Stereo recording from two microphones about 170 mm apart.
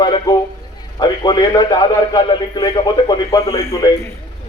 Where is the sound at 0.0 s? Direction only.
25° left (ahead or behind).